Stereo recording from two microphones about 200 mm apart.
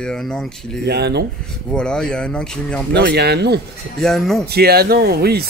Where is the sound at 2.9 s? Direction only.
55° right (ahead or behind).